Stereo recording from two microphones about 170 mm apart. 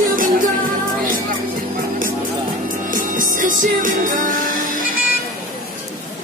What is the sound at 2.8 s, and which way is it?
Music, 50° right (ahead or behind).